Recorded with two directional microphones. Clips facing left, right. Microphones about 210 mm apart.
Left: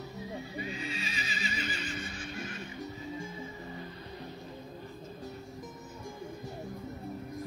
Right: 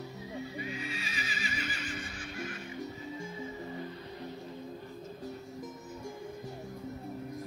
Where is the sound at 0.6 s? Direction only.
25° left (ahead or behind).